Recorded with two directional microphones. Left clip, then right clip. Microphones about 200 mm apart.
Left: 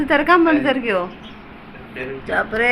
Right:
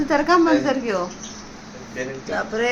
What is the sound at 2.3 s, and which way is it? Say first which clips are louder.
Speech: left 5 dB; 15° left (ahead or behind).